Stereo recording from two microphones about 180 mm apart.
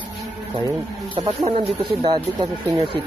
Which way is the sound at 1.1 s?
30° right (ahead or behind).